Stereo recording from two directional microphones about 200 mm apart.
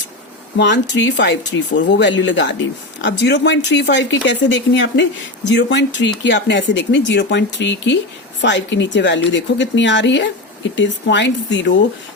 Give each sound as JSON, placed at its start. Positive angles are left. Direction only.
{"t": 0.5, "sound": "a woman's voice", "side_deg": 60}